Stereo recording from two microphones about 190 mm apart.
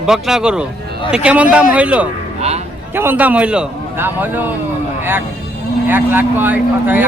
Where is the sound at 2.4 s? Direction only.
35° right (ahead or behind).